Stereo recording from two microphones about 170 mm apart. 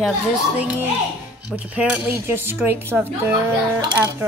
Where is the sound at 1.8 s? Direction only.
10° right (ahead or behind).